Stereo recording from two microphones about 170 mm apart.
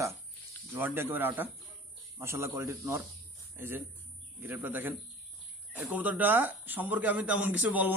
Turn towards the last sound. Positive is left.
turn(degrees=-10)  # may be behind; listen again after turning